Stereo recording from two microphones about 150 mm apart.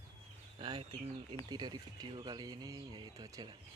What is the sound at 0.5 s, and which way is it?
Speech, 35° right (ahead or behind).